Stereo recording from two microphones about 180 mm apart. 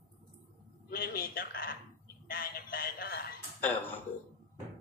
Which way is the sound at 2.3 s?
55° left (ahead or behind).